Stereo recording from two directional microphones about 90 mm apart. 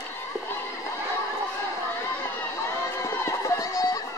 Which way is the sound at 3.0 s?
35° left (ahead or behind).